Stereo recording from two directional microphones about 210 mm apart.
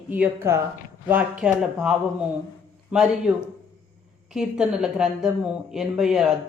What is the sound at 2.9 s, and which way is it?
A woman's voice, 5° right (ahead or behind).